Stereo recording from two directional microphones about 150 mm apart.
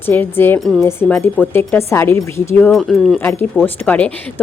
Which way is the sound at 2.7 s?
Centre (ahead or behind).